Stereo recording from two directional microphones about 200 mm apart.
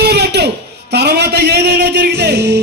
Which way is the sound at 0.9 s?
55° right (ahead or behind).